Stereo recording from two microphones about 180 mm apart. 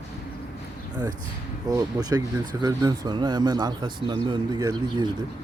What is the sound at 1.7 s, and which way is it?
Speech, 20° right (ahead or behind).